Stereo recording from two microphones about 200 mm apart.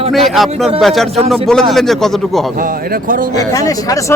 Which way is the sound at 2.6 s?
45° right (ahead or behind).